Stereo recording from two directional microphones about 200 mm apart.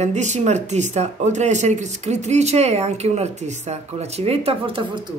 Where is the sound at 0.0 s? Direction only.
35° right (ahead or behind).